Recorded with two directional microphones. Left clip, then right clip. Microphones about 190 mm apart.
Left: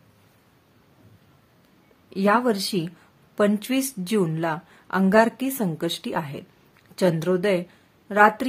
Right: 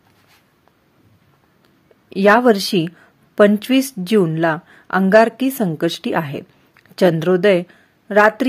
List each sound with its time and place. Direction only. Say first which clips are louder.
2.0 s a woman's voice: right 9 dB; 35° right (ahead or behind)